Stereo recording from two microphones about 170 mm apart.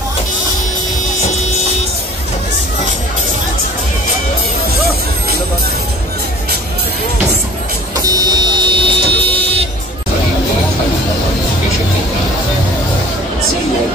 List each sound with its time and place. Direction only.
7.9 s vehicle: 25° right (ahead or behind)